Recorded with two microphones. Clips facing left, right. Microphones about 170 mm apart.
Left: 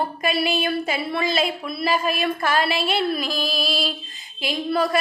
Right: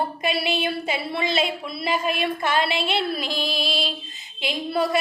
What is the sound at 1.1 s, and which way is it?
A woman's voice, 25° right (ahead or behind).